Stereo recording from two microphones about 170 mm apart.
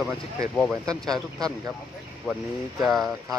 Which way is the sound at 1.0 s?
20° right (ahead or behind).